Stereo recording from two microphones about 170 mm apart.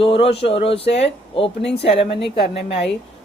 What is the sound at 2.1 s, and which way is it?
Speech, 90° left.